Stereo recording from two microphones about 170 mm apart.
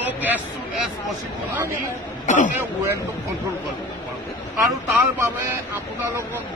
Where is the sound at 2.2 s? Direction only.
45° left (ahead or behind).